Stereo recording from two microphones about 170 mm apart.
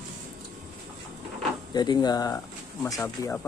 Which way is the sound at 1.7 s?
25° left (ahead or behind).